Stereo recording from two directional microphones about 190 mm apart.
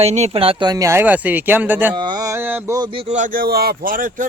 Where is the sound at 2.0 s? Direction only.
20° right (ahead or behind).